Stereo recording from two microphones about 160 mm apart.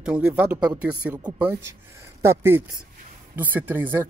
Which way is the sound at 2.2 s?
15° right (ahead or behind).